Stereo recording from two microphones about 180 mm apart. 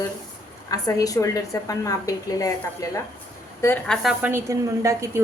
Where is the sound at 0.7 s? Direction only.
20° left (ahead or behind).